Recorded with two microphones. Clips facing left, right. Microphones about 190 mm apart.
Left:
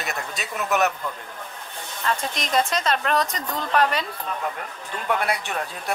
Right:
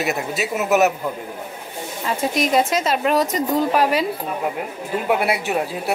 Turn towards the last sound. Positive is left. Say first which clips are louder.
# right 7 dB
turn(degrees=-5)  # may be behind; listen again after turning